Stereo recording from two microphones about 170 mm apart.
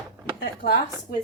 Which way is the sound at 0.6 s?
70° left (ahead or behind).